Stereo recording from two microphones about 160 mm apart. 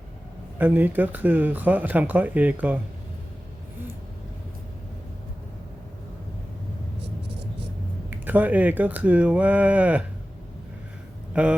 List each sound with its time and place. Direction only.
0.6 s speech: 10° right (ahead or behind)
8.1 s speech: 10° right (ahead or behind)
11.3 s speech: 10° right (ahead or behind)